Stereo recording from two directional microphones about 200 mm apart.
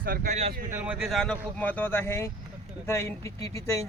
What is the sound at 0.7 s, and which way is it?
Speech, 5° right (ahead or behind).